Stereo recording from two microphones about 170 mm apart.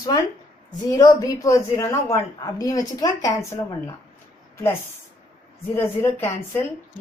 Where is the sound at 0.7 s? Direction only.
20° left (ahead or behind).